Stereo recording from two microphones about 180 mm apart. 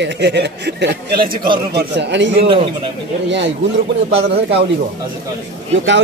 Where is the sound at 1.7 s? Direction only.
70° right (ahead or behind).